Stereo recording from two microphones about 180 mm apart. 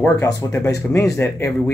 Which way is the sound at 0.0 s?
15° left (ahead or behind).